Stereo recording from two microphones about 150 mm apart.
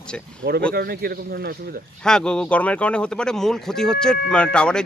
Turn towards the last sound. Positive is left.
turn(degrees=5)  # may be behind; listen again after turning